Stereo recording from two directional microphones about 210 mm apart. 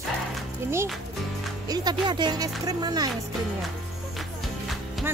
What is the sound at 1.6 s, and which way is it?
Speech, 20° right (ahead or behind).